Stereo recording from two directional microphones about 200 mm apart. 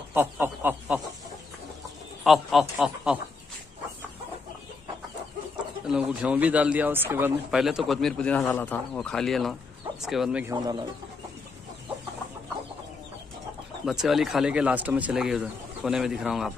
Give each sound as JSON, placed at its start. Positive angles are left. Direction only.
{"t": 0.1, "sound": "speech", "side_deg": -10}
{"t": 2.2, "sound": "speech", "side_deg": 0}
{"t": 5.9, "sound": "speech", "side_deg": -5}
{"t": 10.4, "sound": "speech", "side_deg": -20}
{"t": 13.8, "sound": "speech", "side_deg": 0}